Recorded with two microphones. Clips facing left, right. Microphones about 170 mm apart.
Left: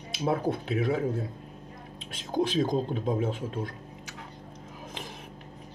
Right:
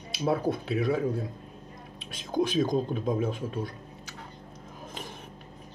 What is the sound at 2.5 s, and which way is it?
Speech, 25° left (ahead or behind).